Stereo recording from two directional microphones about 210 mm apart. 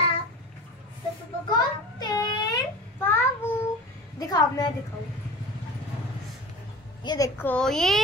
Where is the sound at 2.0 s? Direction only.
15° left (ahead or behind).